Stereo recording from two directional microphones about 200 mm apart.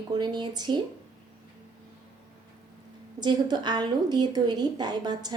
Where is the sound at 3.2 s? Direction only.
20° right (ahead or behind).